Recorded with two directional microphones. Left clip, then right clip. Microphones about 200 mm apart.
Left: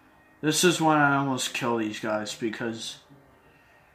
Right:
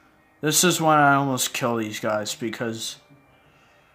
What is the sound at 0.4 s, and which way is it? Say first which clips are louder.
Speech: right 2 dB; 50° right (ahead or behind).